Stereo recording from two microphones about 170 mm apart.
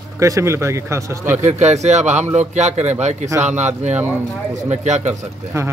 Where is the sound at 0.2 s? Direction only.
15° right (ahead or behind).